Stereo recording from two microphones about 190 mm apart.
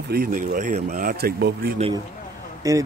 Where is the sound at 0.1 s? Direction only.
50° right (ahead or behind).